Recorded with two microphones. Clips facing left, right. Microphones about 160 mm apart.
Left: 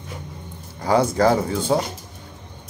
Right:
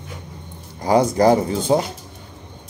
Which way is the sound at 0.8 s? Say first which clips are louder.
Right 2 dB; 15° right (ahead or behind).